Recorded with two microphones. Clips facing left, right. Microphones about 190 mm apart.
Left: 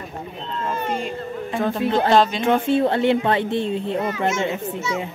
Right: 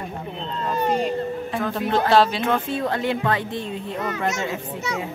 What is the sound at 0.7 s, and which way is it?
Speech, 40° right (ahead or behind).